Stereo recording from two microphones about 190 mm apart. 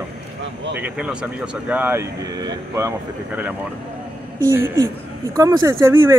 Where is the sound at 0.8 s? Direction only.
5° right (ahead or behind).